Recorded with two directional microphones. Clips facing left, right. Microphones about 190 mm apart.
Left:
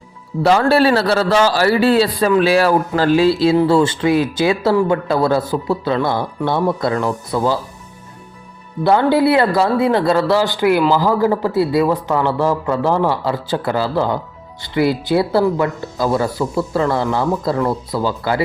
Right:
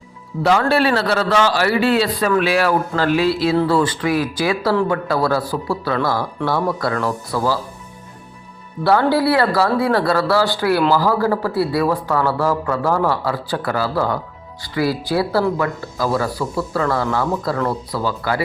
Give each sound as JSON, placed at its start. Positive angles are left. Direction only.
{"t": 0.4, "sound": "a man's voice", "side_deg": 35}
{"t": 8.8, "sound": "a man's voice", "side_deg": 20}